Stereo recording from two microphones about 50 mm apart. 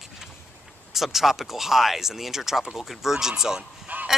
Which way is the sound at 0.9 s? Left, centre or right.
Centre.